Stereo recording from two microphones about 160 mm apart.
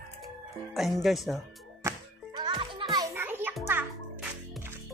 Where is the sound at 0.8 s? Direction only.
Centre (ahead or behind).